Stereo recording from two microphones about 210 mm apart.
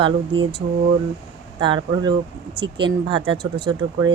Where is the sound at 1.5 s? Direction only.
20° right (ahead or behind).